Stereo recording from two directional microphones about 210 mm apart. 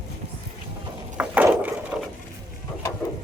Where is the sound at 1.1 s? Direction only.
5° right (ahead or behind).